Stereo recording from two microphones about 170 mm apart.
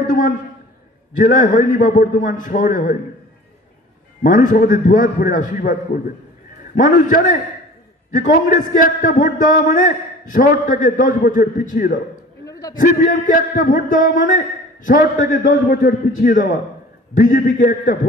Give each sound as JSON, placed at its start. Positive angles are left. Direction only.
{"t": 0.0, "sound": "a man's voice", "side_deg": 50}
{"t": 4.2, "sound": "a man's voice", "side_deg": 50}
{"t": 12.4, "sound": "a sound", "side_deg": 20}
{"t": 12.7, "sound": "a man's voice", "side_deg": 55}